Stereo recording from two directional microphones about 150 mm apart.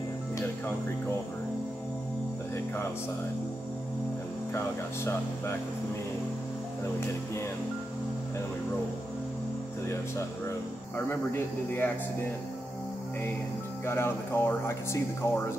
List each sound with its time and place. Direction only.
4.6 s speech: 15° left (ahead or behind)
11.1 s speech: 15° left (ahead or behind)
13.8 s speech: 15° left (ahead or behind)